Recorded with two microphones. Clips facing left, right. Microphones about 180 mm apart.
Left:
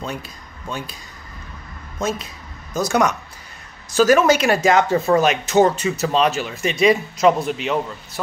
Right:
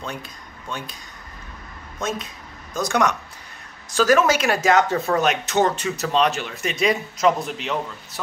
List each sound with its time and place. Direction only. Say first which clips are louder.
2.0 s speech: left 3 dB; 5° left (ahead or behind)